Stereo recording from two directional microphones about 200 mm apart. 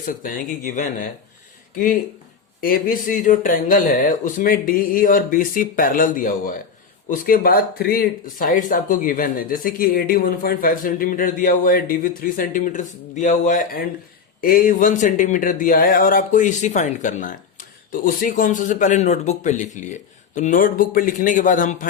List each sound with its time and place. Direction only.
0.0 s speech: 40° left (ahead or behind)
2.6 s speech: 45° left (ahead or behind)